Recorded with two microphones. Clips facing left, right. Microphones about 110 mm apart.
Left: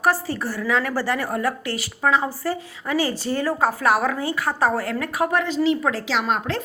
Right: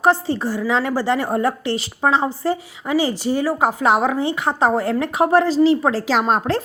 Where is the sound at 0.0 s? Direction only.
25° right (ahead or behind).